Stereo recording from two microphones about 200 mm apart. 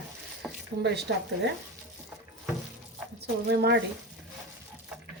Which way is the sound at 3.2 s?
55° right (ahead or behind).